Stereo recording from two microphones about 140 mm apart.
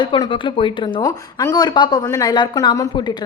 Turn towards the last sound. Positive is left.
turn(degrees=30)  # may be behind; listen again after turning